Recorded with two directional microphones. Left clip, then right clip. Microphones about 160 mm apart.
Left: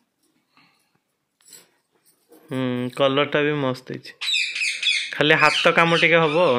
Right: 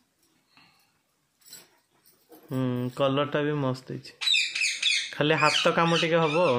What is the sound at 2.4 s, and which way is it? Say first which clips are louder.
Speech: left 5 dB; 15° left (ahead or behind).